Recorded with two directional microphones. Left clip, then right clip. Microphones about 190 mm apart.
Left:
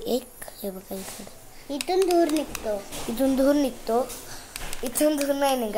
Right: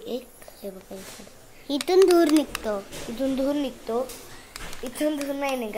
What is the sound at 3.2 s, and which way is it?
Speech, 15° left (ahead or behind).